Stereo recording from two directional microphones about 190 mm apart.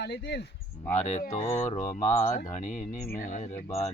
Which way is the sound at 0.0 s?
60° left (ahead or behind).